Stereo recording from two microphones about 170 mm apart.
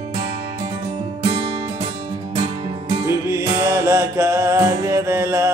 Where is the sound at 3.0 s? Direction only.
15° right (ahead or behind).